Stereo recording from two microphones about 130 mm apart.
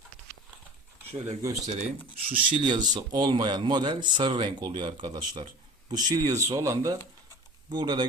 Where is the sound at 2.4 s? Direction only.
45° right (ahead or behind).